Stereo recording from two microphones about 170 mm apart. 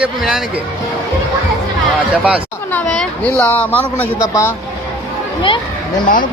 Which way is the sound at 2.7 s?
5° left (ahead or behind).